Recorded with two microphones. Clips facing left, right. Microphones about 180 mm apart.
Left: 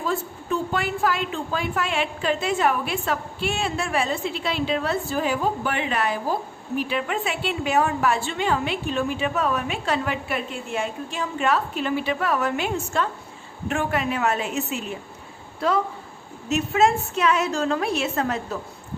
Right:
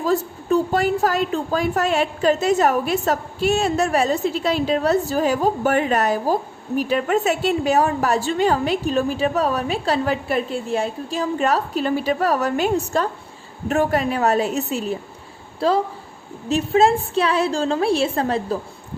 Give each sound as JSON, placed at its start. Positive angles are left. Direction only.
{"t": 0.0, "sound": "a woman's voice", "side_deg": -40}